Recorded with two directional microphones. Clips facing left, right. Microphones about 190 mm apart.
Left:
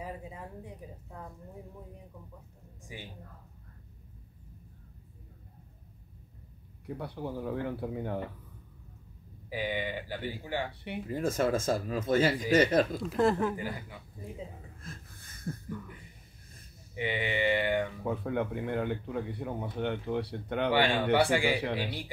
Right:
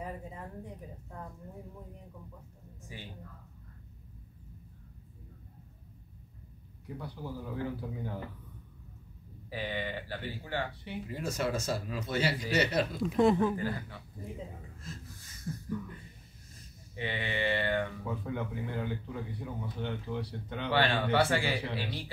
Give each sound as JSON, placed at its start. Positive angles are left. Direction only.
{"t": 0.0, "sound": "a sound", "side_deg": 5}
{"t": 2.9, "sound": "speech", "side_deg": 15}
{"t": 7.0, "sound": "speech", "side_deg": 60}
{"t": 9.5, "sound": "speech", "side_deg": 15}
{"t": 10.8, "sound": "speech", "side_deg": 55}
{"t": 13.0, "sound": "speech", "side_deg": 0}
{"t": 13.6, "sound": "speech", "side_deg": 15}
{"t": 14.8, "sound": "a sound", "side_deg": 55}
{"t": 16.9, "sound": "speech", "side_deg": 15}
{"t": 18.0, "sound": "speech", "side_deg": 60}
{"t": 20.7, "sound": "speech", "side_deg": 15}